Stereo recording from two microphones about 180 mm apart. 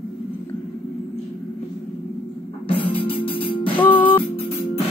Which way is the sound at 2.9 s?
30° left (ahead or behind).